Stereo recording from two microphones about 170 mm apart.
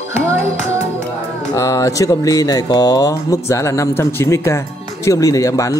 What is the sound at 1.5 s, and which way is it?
A man's voice, 20° left (ahead or behind).